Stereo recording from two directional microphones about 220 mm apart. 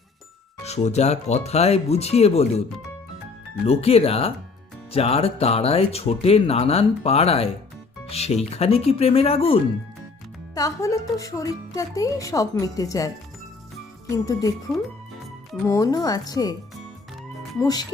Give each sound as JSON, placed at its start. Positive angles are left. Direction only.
{"t": 0.6, "sound": "speech", "side_deg": 30}
{"t": 3.7, "sound": "speech", "side_deg": 25}
{"t": 10.5, "sound": "speech", "side_deg": 15}
{"t": 14.1, "sound": "speech", "side_deg": 15}
{"t": 15.6, "sound": "speech", "side_deg": 15}
{"t": 17.6, "sound": "speech", "side_deg": 15}